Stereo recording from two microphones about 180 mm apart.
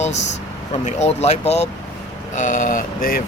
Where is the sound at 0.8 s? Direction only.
35° left (ahead or behind).